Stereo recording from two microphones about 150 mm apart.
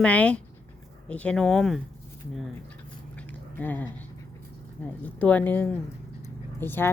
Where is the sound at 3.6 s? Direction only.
10° left (ahead or behind).